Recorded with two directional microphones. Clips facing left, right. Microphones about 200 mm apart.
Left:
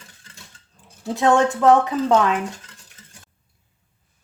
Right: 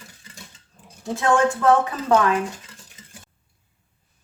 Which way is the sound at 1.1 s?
20° left (ahead or behind).